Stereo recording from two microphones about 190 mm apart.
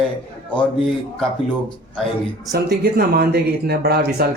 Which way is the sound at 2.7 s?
55° right (ahead or behind).